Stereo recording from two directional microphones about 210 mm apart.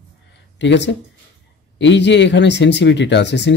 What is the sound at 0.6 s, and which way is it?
Speech, 55° left (ahead or behind).